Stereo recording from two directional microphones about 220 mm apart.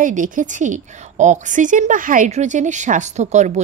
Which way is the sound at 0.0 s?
35° right (ahead or behind).